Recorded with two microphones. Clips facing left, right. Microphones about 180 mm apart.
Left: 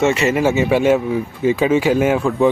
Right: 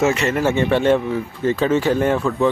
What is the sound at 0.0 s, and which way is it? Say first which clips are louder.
Speech: left 2 dB; 5° left (ahead or behind).